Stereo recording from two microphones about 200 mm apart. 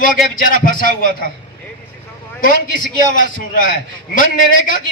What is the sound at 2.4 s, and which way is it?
A man's voice, 45° left (ahead or behind).